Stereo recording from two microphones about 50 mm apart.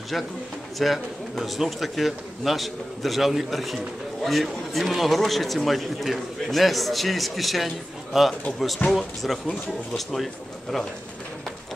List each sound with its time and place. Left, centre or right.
0.1 s a man's voice: centre